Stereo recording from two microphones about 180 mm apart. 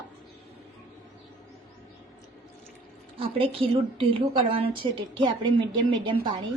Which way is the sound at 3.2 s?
30° right (ahead or behind).